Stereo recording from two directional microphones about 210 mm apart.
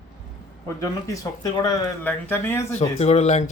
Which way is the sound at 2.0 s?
10° left (ahead or behind).